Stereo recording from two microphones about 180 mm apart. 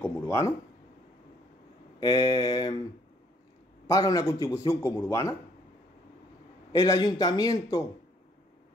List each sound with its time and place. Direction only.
0.0 s a sound: 15° left (ahead or behind)
2.0 s a man's voice: 25° left (ahead or behind)
3.8 s a man's voice: 20° left (ahead or behind)
6.7 s a man's voice: 20° left (ahead or behind)